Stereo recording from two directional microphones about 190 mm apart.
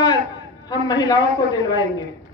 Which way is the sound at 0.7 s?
20° left (ahead or behind).